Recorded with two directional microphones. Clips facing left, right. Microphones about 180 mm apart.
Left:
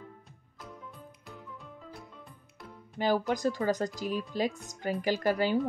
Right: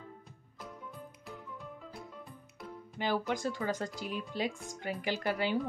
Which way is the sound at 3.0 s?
40° left (ahead or behind).